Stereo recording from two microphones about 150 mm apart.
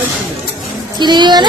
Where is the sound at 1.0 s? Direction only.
30° right (ahead or behind).